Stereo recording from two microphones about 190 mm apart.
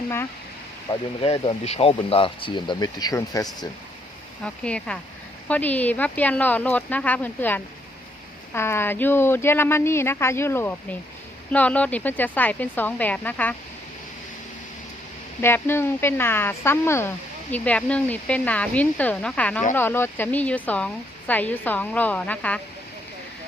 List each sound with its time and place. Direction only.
0.9 s speech: 30° left (ahead or behind)
4.4 s a woman's voice: 5° left (ahead or behind)
15.4 s a woman's voice: 10° left (ahead or behind)